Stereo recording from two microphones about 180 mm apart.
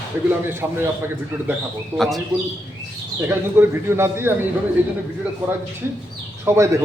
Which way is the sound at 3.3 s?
15° right (ahead or behind).